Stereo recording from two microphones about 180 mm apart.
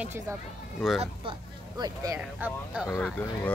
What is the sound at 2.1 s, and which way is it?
Speech, 5° right (ahead or behind).